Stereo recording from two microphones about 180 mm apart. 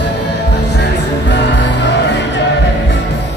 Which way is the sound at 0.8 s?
75° left (ahead or behind).